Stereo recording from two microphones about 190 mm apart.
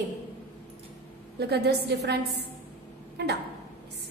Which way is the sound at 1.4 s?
60° right (ahead or behind).